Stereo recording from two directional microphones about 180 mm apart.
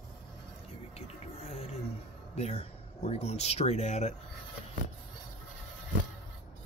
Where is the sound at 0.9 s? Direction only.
35° left (ahead or behind).